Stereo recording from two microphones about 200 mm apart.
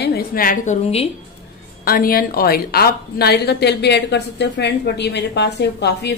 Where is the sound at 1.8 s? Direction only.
45° left (ahead or behind).